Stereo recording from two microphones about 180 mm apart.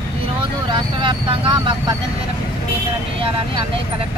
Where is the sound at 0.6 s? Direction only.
25° right (ahead or behind).